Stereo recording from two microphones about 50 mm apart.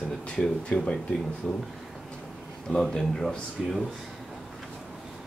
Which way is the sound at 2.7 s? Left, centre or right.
Centre.